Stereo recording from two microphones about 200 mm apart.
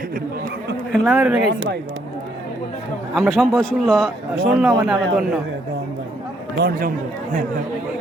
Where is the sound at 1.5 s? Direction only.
60° right (ahead or behind).